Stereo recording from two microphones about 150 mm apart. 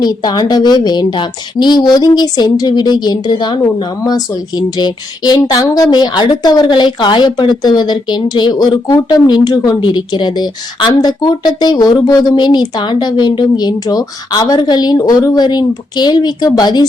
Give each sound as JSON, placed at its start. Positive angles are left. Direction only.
{"t": 0.0, "sound": "a woman's voice", "side_deg": 25}